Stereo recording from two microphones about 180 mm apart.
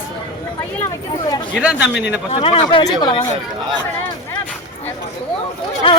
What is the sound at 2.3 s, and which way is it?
Speech, 40° left (ahead or behind).